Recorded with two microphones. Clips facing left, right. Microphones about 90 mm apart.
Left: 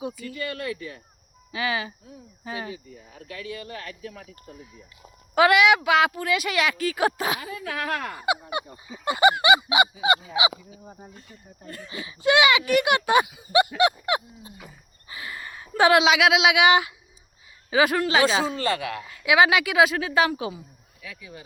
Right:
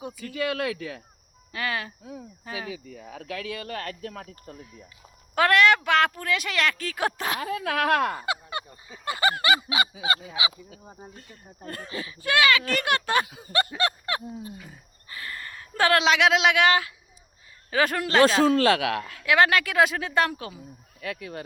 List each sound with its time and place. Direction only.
0.2 s speech: 90° right
1.5 s speech: 5° left (ahead or behind)
2.7 s speech: 90° right; by 4.5 s 50° right (ahead or behind)
5.3 s speech: 5° left (ahead or behind)
7.3 s speech: 60° right (ahead or behind)
8.2 s speech: 15° left (ahead or behind)
10.0 s a sound: 25° left (ahead or behind)
11.1 s speech: 55° right (ahead or behind)
12.0 s speech: 20° left (ahead or behind)
18.4 s speech: 70° right (ahead or behind)
19.2 s speech: 10° left (ahead or behind)
21.0 s speech: 65° right (ahead or behind)